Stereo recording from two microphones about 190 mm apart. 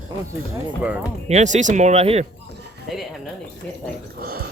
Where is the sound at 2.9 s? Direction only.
Centre (ahead or behind).